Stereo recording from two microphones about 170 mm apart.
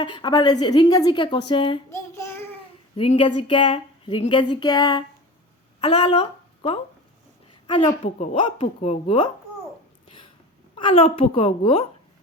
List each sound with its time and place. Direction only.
0.0 s speech: 30° left (ahead or behind)
1.9 s child singing: 15° left (ahead or behind)
2.9 s speech: 30° left (ahead or behind)
8.0 s speech: 35° left (ahead or behind)
10.8 s speech: 30° left (ahead or behind)